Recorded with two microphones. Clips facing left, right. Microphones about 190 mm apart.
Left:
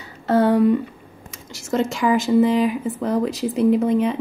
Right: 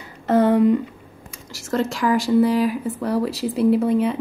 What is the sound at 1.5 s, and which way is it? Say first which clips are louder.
A woman's voice: left 1 dB; centre (ahead or behind).